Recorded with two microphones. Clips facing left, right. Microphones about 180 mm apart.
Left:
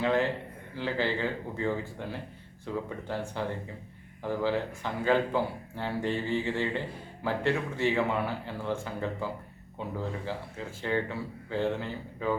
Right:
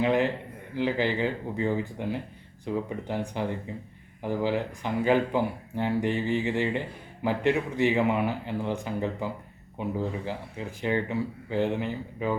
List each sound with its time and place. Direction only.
0.0 s speech: 15° right (ahead or behind)